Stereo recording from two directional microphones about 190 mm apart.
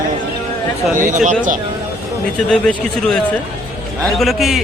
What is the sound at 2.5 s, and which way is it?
A man's voice, 5° left (ahead or behind).